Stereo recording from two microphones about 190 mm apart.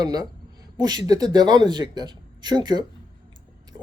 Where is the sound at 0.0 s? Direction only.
20° right (ahead or behind).